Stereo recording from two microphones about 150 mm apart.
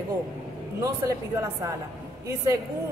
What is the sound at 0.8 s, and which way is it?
Speech, 20° right (ahead or behind).